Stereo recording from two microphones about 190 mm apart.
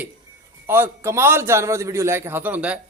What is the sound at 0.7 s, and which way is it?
A man's voice, 15° right (ahead or behind).